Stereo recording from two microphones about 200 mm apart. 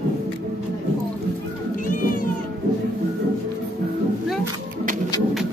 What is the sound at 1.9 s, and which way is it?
Cat, 45° left (ahead or behind).